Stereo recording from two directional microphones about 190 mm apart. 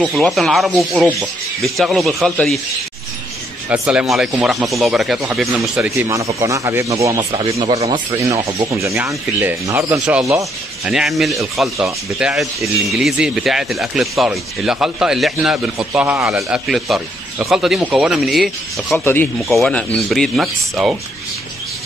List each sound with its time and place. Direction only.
0.0 s speech: centre (ahead or behind)
3.6 s speech: 5° right (ahead or behind)
5.9 s speech: 15° right (ahead or behind)
7.5 s speech: 30° right (ahead or behind)
7.8 s speech: 15° right (ahead or behind)